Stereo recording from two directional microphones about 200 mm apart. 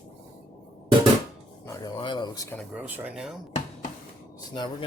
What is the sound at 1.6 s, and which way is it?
Speech, 20° left (ahead or behind).